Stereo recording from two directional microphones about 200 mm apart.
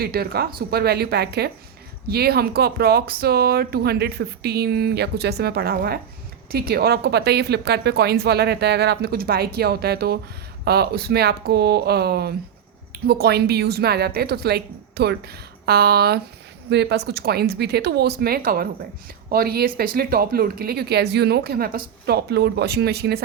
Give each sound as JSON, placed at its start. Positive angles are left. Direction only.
{"t": 0.0, "sound": "speech", "side_deg": -50}